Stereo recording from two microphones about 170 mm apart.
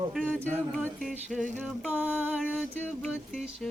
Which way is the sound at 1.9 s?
10° right (ahead or behind).